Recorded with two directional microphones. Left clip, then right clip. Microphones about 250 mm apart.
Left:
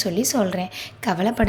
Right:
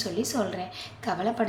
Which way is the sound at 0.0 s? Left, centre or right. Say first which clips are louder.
Left 7 dB; left.